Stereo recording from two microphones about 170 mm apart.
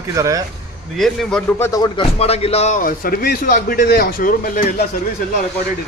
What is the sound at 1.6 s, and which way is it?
Speech, 20° left (ahead or behind).